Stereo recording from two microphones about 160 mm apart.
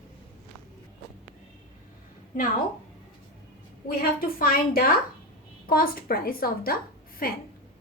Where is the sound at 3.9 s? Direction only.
65° left (ahead or behind).